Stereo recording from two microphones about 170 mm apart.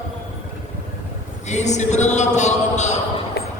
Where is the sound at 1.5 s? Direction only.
45° left (ahead or behind).